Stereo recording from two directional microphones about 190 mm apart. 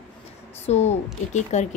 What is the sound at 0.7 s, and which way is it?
A woman's voice, 35° left (ahead or behind).